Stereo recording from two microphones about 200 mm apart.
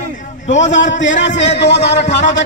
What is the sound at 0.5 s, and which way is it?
Speech, 35° left (ahead or behind).